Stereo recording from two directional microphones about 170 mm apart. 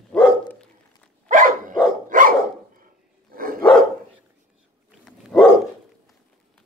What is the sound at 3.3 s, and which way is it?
Dog, 55° right (ahead or behind).